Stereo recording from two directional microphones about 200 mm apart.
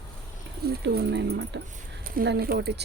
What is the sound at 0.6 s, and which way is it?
Speech, 55° right (ahead or behind).